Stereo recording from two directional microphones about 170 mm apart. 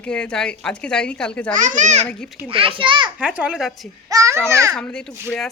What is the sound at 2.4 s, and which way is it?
Speech, 35° right (ahead or behind).